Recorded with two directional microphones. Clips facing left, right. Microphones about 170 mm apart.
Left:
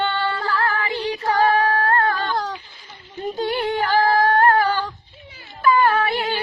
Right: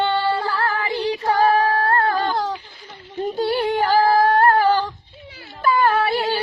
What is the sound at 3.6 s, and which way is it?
Female singing, 10° right (ahead or behind).